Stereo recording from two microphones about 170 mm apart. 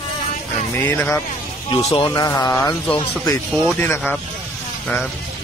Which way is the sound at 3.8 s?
10° left (ahead or behind).